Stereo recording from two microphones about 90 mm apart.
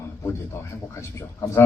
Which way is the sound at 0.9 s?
30° left (ahead or behind).